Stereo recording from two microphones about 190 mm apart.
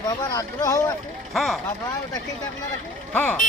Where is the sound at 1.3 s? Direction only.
Centre (ahead or behind).